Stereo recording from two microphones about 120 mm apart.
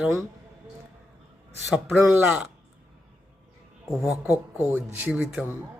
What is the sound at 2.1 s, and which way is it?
Speech, 15° right (ahead or behind).